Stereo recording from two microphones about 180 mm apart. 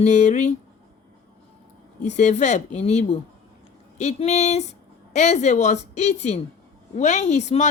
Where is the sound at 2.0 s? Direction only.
40° left (ahead or behind).